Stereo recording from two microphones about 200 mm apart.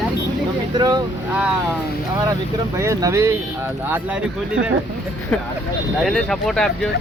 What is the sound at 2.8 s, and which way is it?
Speech, 15° right (ahead or behind).